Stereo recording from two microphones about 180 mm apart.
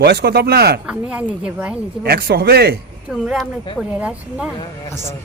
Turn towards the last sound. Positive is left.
turn(degrees=-5)  # may be behind; listen again after turning